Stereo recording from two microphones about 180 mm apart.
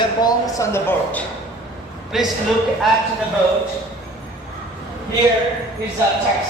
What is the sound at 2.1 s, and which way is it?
Speech, centre (ahead or behind).